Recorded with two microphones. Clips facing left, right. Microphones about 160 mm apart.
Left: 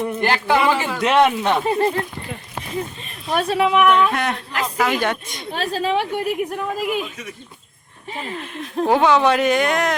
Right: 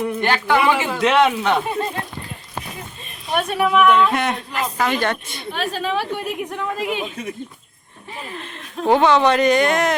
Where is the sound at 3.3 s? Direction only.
30° left (ahead or behind); by 4.1 s 15° left (ahead or behind).